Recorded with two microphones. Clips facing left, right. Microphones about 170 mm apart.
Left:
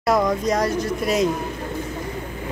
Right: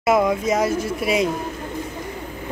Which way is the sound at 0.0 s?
5° right (ahead or behind).